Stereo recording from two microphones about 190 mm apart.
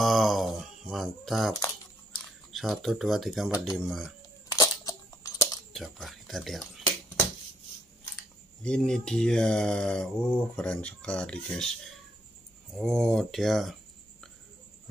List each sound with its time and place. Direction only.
0.0 s typing: centre (ahead or behind)
2.5 s speech: centre (ahead or behind)
4.5 s a sound: 15° left (ahead or behind)
5.7 s a sound: centre (ahead or behind)
8.6 s speech: 5° left (ahead or behind)
12.7 s speech: 5° left (ahead or behind)